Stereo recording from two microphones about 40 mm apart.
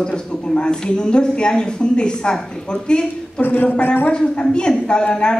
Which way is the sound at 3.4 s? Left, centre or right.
Left.